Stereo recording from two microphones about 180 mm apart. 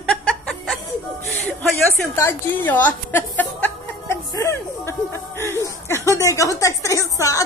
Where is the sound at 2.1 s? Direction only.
10° left (ahead or behind).